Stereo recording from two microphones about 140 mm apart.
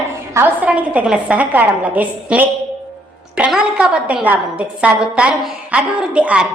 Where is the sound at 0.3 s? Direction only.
10° right (ahead or behind).